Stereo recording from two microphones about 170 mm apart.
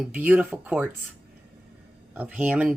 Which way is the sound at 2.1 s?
10° right (ahead or behind).